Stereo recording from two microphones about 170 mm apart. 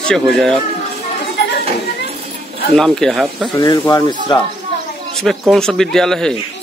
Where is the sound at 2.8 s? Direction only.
5° left (ahead or behind).